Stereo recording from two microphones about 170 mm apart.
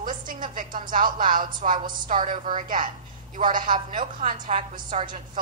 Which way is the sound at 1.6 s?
40° right (ahead or behind).